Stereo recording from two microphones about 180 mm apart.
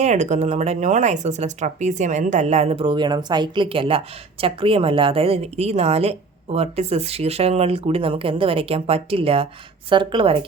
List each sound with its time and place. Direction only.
0.0 s speech: 40° right (ahead or behind)